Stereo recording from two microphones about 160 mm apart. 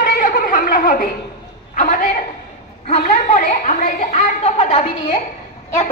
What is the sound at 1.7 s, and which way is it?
A man's voice, 55° left (ahead or behind).